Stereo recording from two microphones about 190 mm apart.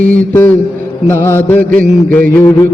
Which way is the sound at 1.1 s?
10° left (ahead or behind).